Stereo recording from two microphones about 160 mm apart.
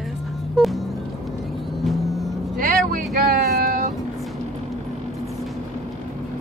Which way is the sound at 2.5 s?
60° right (ahead or behind).